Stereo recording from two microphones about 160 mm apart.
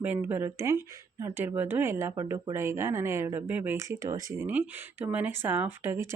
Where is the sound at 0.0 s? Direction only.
10° right (ahead or behind).